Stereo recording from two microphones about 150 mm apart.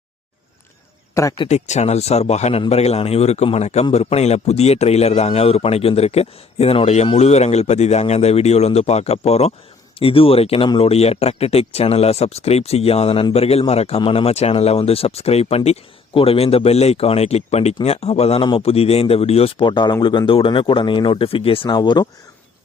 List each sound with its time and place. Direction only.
1.1 s speech: 20° left (ahead or behind)
1.5 s speech: 50° left (ahead or behind); by 22.0 s 30° left (ahead or behind)